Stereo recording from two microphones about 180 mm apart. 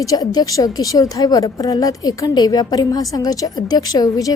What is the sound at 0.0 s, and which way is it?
A woman's voice, 20° left (ahead or behind).